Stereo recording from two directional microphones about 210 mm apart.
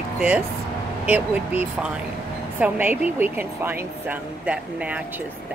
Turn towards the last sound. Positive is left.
turn(degrees=-5)  # may be behind; listen again after turning